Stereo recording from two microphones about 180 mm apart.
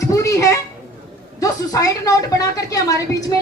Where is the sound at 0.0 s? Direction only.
15° left (ahead or behind).